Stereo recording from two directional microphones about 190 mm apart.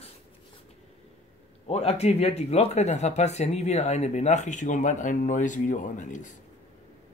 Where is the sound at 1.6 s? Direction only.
35° left (ahead or behind).